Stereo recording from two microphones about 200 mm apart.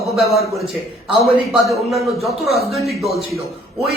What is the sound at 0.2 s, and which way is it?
Speech, centre (ahead or behind).